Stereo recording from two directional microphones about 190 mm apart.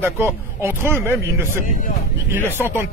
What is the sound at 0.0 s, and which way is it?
Speech, 10° right (ahead or behind).